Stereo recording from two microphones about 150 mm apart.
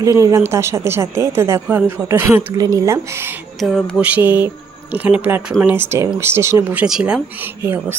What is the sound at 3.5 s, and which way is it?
Speech, centre (ahead or behind).